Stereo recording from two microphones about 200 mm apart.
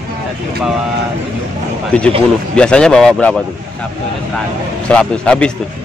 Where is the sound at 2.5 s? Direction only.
5° left (ahead or behind).